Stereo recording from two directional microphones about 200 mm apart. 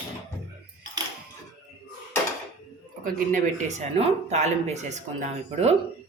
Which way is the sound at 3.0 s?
40° right (ahead or behind).